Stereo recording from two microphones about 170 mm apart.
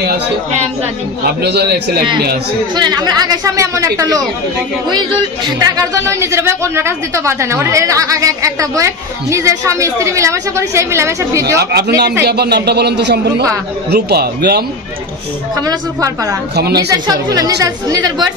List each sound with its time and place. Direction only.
1.4 s a man's voice: 75° right (ahead or behind)
2.7 s speech: 25° right (ahead or behind)
11.7 s a man's voice: 80° right
13.8 s a man's voice: 70° right (ahead or behind)
15.6 s speech: 20° right (ahead or behind)